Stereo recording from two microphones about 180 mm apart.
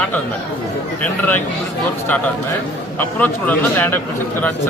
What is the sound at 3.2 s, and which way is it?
Speech, 10° left (ahead or behind).